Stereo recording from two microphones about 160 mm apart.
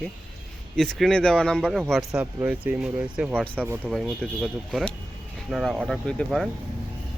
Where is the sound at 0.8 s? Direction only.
Centre (ahead or behind).